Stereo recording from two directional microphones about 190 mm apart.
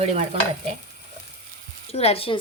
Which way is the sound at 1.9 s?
30° left (ahead or behind).